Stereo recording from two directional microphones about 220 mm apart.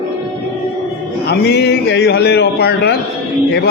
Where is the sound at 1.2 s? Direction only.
50° left (ahead or behind).